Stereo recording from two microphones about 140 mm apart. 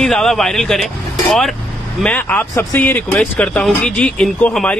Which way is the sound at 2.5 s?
25° left (ahead or behind).